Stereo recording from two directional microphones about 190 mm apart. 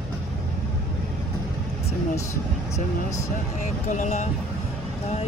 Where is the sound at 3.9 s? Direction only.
40° left (ahead or behind).